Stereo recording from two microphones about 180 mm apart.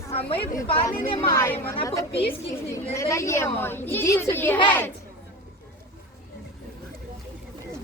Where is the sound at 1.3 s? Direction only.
15° left (ahead or behind).